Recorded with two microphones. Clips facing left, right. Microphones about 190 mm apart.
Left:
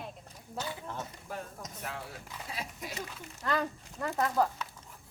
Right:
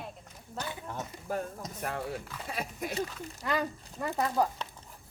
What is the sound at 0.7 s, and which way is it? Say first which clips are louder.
Speech: right 1 dB; 20° right (ahead or behind).